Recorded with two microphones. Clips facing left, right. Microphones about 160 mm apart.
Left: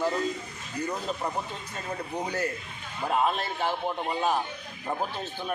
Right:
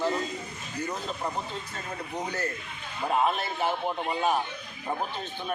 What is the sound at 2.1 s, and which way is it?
Speech, 10° left (ahead or behind).